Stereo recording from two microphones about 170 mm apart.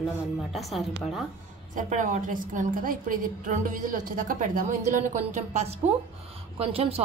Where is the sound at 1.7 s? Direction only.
50° right (ahead or behind).